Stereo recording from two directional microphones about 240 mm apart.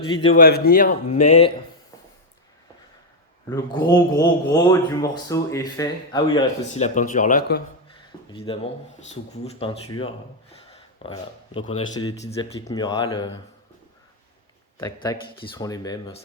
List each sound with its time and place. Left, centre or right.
0.3 s speech: left
3.5 s speech: centre
6.7 s speech: left
8.3 s speech: left
15.0 s speech: centre